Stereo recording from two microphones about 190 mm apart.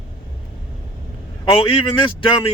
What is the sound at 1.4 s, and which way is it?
Speech, 25° left (ahead or behind).